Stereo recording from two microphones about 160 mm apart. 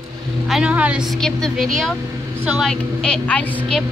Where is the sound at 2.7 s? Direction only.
5° left (ahead or behind).